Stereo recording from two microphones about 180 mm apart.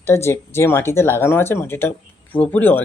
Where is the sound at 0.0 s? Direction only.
15° left (ahead or behind).